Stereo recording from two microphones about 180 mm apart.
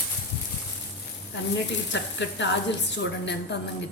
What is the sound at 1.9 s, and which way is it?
Speech, 80° left.